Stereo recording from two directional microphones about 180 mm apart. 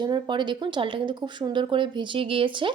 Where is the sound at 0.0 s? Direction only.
25° right (ahead or behind).